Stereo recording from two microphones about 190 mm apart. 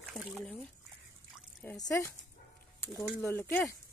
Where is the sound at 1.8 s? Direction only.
15° left (ahead or behind).